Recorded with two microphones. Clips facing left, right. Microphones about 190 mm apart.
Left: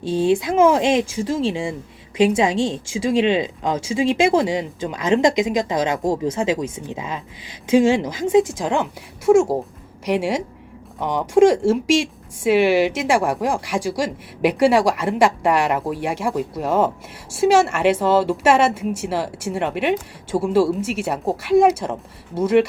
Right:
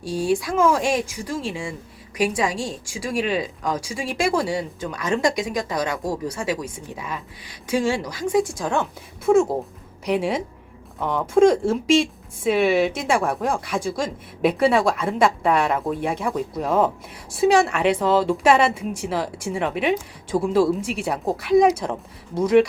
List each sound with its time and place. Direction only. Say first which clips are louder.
0.0 s speech: left 4 dB; 20° left (ahead or behind)
11.0 s a woman's voice: left 2 dB; 15° left (ahead or behind)